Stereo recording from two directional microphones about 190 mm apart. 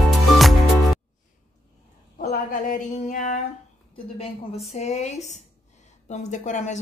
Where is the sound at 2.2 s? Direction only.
45° left (ahead or behind).